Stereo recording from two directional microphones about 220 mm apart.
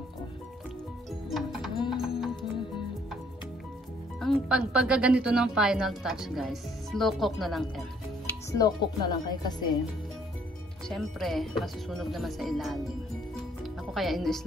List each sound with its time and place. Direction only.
2.0 s music: centre (ahead or behind)
4.2 s speech: centre (ahead or behind)
8.3 s speech: 15° left (ahead or behind)
10.9 s speech: centre (ahead or behind)
13.9 s speech: centre (ahead or behind)